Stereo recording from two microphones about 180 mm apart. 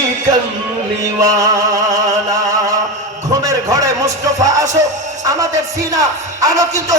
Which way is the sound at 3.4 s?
20° right (ahead or behind).